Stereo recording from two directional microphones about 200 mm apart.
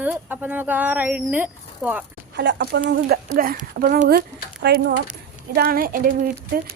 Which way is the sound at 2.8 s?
50° right (ahead or behind).